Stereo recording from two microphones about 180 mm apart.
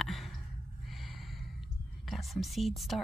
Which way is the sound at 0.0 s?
Centre (ahead or behind).